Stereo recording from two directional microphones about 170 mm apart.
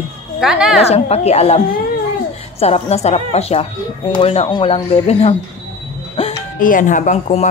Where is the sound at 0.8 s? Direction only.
40° left (ahead or behind).